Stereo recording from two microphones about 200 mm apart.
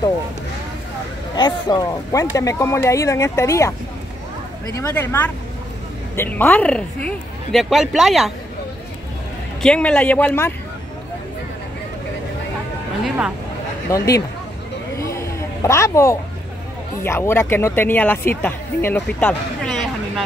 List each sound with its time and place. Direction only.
1.3 s a woman's voice: 20° left (ahead or behind); by 8.3 s centre (ahead or behind)
9.6 s speech: 5° left (ahead or behind)
13.8 s speech: 15° left (ahead or behind)
15.0 s a sound: 15° left (ahead or behind)
17.0 s speech: 10° left (ahead or behind)